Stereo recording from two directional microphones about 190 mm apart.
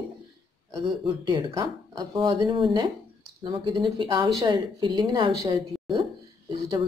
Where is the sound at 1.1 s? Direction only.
25° right (ahead or behind).